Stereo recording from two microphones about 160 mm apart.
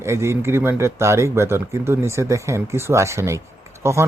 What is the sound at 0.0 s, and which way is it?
Speech, 15° right (ahead or behind).